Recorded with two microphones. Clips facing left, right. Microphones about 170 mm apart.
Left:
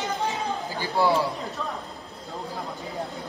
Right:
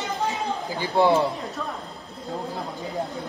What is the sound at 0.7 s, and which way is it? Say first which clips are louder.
Speech: right 4 dB; 20° right (ahead or behind).